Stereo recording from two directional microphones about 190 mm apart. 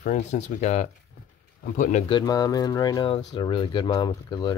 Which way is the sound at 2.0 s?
20° left (ahead or behind).